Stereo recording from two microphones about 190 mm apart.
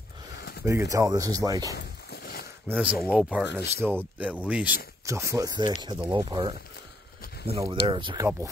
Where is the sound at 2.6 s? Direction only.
5° right (ahead or behind).